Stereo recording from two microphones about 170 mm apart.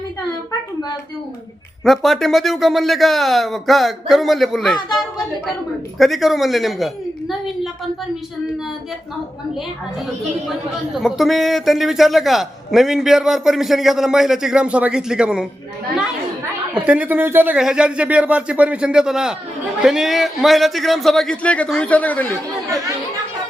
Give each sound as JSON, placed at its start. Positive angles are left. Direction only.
{"t": 1.8, "sound": "a man's voice", "side_deg": 0}
{"t": 10.9, "sound": "a man's voice", "side_deg": 0}
{"t": 16.7, "sound": "a man's voice", "side_deg": -10}